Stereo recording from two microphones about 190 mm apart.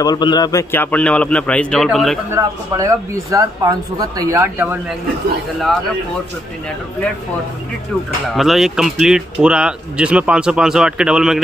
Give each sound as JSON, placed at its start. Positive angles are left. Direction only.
{"t": 0.0, "sound": "a man's voice", "side_deg": 20}
{"t": 2.3, "sound": "speech", "side_deg": -20}
{"t": 8.3, "sound": "speech", "side_deg": 0}